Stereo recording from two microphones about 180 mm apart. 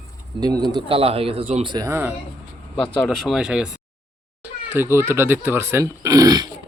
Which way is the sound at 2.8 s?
Centre (ahead or behind).